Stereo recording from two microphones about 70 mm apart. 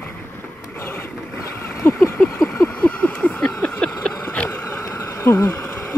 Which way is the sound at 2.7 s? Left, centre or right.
Centre.